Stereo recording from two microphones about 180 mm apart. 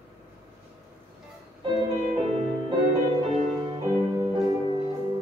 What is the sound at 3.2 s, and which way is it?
Music, 25° right (ahead or behind).